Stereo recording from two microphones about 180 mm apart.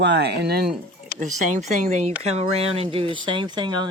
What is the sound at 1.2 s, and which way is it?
Speech, 40° right (ahead or behind).